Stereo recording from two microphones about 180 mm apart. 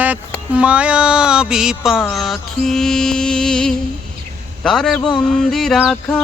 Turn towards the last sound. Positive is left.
turn(degrees=0)  # may be behind; listen again after turning